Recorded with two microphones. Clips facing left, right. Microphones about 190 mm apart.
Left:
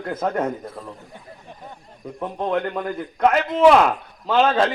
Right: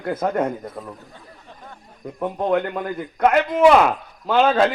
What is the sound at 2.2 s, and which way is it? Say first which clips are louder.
A man's voice: right 3 dB; 5° right (ahead or behind).